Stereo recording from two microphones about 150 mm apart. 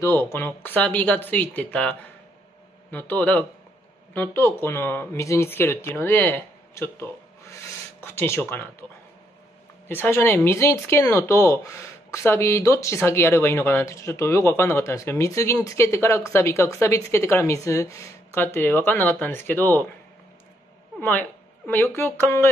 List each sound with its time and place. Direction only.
0.0 s speech: 15° left (ahead or behind)
9.8 s speech: 15° left (ahead or behind)
21.0 s speech: 10° left (ahead or behind)